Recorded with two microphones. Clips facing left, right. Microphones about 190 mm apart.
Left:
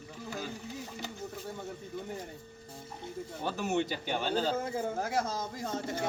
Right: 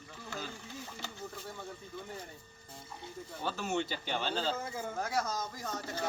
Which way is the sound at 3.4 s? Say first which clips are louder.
Left 3 dB; 15° left (ahead or behind).